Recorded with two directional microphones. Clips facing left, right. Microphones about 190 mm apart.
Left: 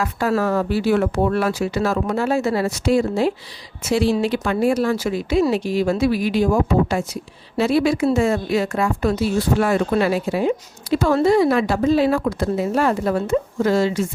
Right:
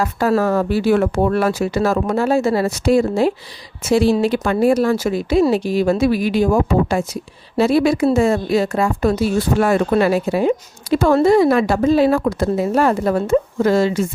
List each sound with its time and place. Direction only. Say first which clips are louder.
0.0 s speech: right 3 dB; 40° right (ahead or behind)